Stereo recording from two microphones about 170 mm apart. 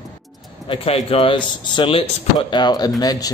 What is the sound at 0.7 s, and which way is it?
Speech, 35° left (ahead or behind).